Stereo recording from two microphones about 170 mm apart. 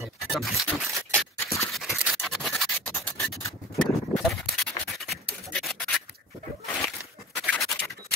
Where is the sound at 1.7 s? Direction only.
Centre (ahead or behind).